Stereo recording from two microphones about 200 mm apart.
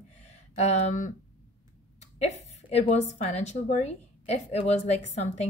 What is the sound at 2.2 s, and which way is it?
A woman's voice, 30° left (ahead or behind).